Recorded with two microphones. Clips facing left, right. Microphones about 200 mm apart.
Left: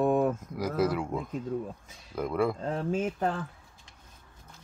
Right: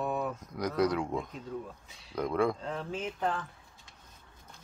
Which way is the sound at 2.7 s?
45° left (ahead or behind).